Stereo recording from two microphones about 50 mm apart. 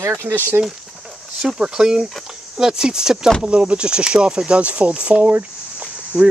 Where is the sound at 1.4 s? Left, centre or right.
Centre.